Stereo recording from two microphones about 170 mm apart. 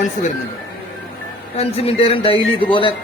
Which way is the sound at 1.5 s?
35° left (ahead or behind).